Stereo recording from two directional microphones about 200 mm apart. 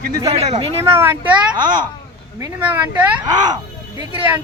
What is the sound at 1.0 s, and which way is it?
Speech, 10° right (ahead or behind).